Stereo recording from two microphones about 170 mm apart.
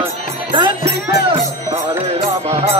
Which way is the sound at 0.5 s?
30° right (ahead or behind).